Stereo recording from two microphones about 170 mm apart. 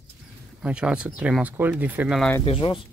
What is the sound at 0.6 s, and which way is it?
Speech, 5° right (ahead or behind).